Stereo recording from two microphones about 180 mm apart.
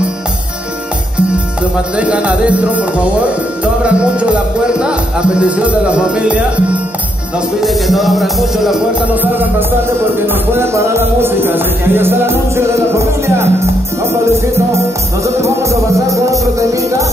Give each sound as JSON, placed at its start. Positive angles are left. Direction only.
{"t": 2.0, "sound": "music", "side_deg": -5}
{"t": 9.1, "sound": "music", "side_deg": -10}
{"t": 15.2, "sound": "music", "side_deg": -15}